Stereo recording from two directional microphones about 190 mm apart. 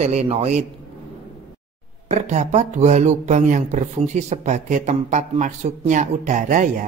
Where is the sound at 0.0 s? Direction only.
35° right (ahead or behind).